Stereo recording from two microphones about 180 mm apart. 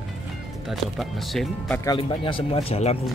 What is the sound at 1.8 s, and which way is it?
Speech, 25° left (ahead or behind).